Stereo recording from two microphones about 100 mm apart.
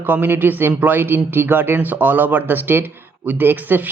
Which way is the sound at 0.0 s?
20° right (ahead or behind).